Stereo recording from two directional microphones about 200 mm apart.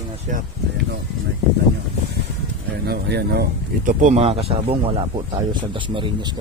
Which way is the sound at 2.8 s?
55° right (ahead or behind).